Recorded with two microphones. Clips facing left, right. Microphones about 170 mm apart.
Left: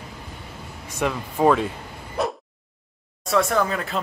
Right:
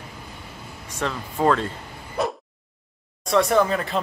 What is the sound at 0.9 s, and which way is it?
Speech, 10° left (ahead or behind).